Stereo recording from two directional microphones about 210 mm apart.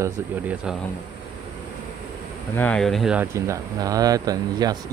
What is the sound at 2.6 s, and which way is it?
Speech, 5° left (ahead or behind).